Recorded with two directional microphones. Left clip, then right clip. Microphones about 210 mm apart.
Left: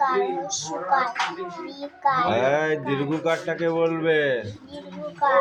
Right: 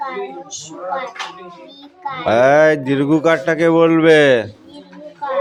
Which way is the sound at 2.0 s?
20° left (ahead or behind).